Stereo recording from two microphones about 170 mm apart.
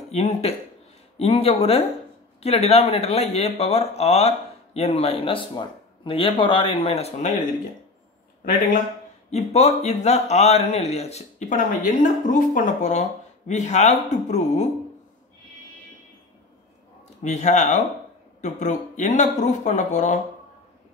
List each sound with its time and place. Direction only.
0.1 s speech: 40° left (ahead or behind)
9.3 s speech: 40° left (ahead or behind)
17.2 s speech: 45° left (ahead or behind)